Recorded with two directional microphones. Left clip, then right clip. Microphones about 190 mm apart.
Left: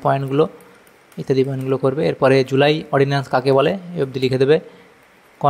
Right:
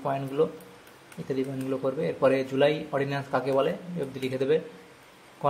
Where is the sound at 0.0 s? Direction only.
45° left (ahead or behind).